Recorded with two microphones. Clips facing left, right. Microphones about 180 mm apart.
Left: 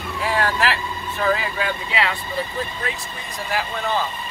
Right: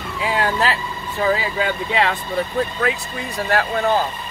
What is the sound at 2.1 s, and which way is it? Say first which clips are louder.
Speech: right 5 dB; 60° right (ahead or behind).